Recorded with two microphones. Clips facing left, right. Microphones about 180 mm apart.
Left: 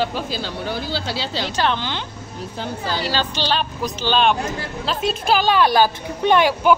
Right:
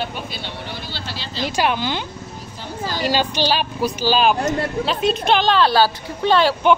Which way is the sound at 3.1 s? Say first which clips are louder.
Right 5 dB; 15° right (ahead or behind).